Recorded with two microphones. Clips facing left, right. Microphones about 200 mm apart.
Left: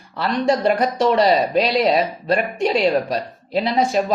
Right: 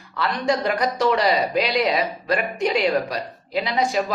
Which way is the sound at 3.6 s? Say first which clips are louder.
Left 4 dB; 30° left (ahead or behind).